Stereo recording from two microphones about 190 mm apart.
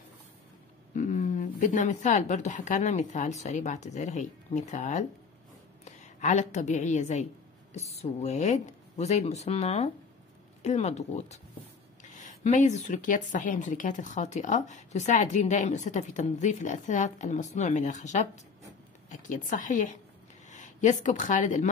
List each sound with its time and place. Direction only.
0.9 s a woman's voice: 40° left (ahead or behind)